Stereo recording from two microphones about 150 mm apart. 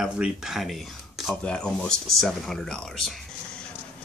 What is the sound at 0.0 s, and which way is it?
Speech, 5° right (ahead or behind).